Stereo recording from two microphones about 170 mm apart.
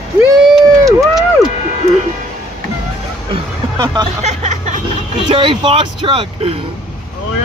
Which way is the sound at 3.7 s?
25° right (ahead or behind).